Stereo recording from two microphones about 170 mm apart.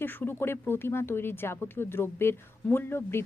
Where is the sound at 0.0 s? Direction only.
10° left (ahead or behind).